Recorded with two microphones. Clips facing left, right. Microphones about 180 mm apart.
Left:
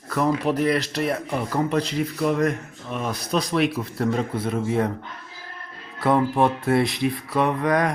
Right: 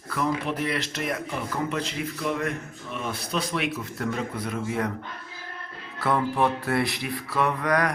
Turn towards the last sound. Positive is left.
turn(degrees=20)  # may be behind; listen again after turning